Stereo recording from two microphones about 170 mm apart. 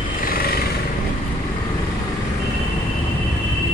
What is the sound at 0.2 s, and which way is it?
Vehicle, 60° left (ahead or behind).